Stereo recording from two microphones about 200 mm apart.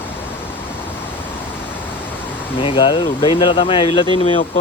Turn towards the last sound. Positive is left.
turn(degrees=30)  # may be behind; listen again after turning